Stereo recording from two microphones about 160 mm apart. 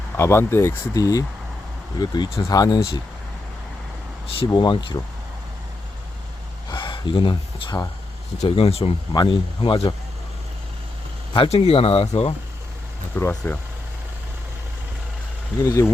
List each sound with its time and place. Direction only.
0.2 s speech: 15° left (ahead or behind)
4.3 s speech: 35° left (ahead or behind)
6.7 s speech: 30° left (ahead or behind)
11.3 s speech: 40° left (ahead or behind)
13.1 s speech: 10° left (ahead or behind)
15.6 s speech: 20° left (ahead or behind)